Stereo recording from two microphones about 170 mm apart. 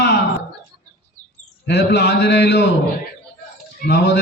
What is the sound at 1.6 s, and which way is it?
A man's voice, 90° left.